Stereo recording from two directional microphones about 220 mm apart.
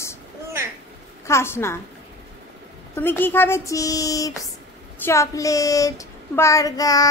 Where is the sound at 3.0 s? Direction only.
10° left (ahead or behind).